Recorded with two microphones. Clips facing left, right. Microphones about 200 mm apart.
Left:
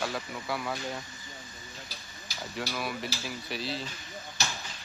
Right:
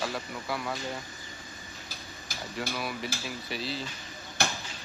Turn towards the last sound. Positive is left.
turn(degrees=-55)  # may be behind; listen again after turning